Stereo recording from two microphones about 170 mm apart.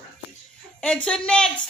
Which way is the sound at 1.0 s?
5° left (ahead or behind).